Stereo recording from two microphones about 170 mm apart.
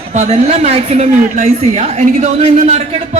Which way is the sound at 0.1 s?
40° right (ahead or behind).